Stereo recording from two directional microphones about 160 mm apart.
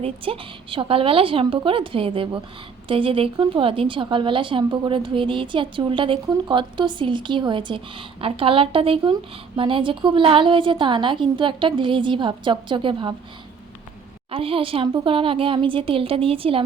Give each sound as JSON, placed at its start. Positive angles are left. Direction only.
{"t": 0.0, "sound": "speech", "side_deg": -35}
{"t": 14.3, "sound": "speech", "side_deg": -35}